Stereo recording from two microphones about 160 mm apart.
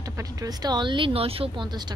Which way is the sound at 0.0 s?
20° right (ahead or behind).